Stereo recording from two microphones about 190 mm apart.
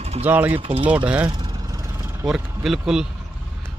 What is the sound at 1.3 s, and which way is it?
Vehicle, 20° right (ahead or behind).